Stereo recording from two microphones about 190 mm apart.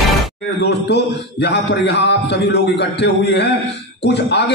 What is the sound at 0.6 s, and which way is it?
A man's voice, 60° left (ahead or behind).